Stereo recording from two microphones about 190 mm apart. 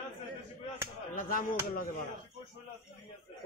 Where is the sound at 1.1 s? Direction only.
50° left (ahead or behind).